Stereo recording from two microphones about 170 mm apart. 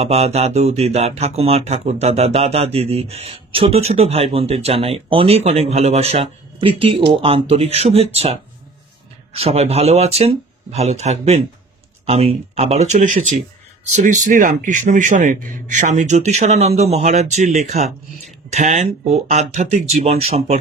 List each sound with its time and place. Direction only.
0.0 s a man's voice: 35° right (ahead or behind)